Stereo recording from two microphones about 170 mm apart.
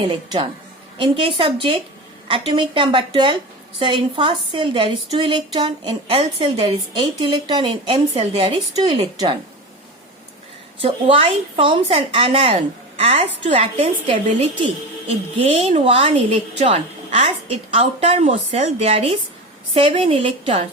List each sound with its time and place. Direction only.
0.0 s a woman's voice: 30° right (ahead or behind)
10.8 s a woman's voice: 35° right (ahead or behind)
15.4 s a woman's voice: 35° right (ahead or behind)